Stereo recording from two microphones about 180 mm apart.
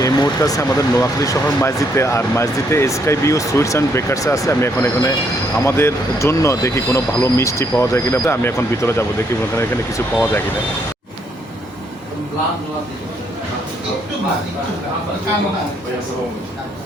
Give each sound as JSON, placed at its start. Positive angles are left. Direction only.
{"t": 0.0, "sound": "speech", "side_deg": 20}